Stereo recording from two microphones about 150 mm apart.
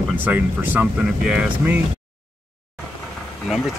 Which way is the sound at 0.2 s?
10° right (ahead or behind).